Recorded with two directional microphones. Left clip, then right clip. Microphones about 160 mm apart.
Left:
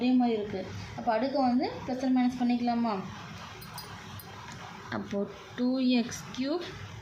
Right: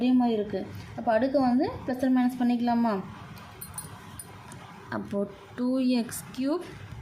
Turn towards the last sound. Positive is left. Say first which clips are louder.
# right 3 dB
turn(degrees=-25)  # may be behind; listen again after turning